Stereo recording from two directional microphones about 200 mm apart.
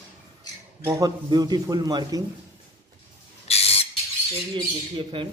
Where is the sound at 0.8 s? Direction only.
20° right (ahead or behind).